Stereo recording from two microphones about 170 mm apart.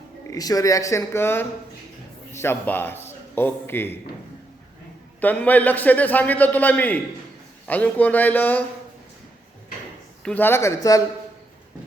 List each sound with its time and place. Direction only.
0.3 s a man's voice: 20° left (ahead or behind)
5.2 s a man's voice: 10° left (ahead or behind)
10.2 s a man's voice: 10° left (ahead or behind)